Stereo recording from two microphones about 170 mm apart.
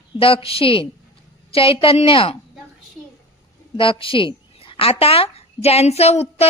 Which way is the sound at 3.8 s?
30° left (ahead or behind).